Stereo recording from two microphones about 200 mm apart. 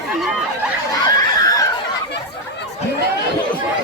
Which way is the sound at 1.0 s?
15° left (ahead or behind).